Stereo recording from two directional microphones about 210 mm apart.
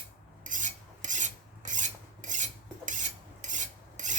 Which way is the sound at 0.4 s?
35° right (ahead or behind).